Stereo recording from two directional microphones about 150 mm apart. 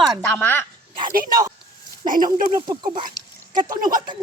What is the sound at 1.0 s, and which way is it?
Speech, 70° right (ahead or behind).